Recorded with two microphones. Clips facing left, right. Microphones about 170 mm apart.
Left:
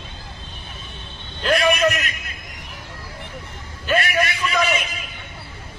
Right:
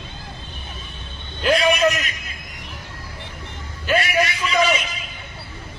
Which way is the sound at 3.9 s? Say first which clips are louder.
Right 1 dB; 55° left (ahead or behind).